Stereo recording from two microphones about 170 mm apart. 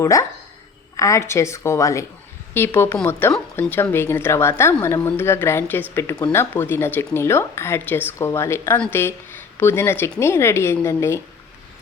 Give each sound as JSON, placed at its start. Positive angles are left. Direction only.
{"t": 0.0, "sound": "speech", "side_deg": 20}